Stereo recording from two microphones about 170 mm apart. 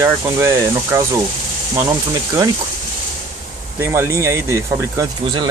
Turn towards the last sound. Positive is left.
turn(degrees=-20)  # may be behind; listen again after turning